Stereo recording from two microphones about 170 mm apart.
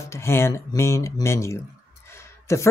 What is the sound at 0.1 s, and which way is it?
Speech, 15° left (ahead or behind).